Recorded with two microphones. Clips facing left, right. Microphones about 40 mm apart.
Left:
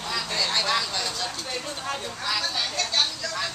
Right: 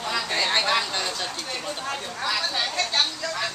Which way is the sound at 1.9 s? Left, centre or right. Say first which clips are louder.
Right 1 dB; centre.